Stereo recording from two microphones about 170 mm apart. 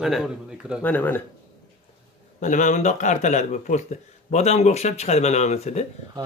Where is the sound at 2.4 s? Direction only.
45° left (ahead or behind).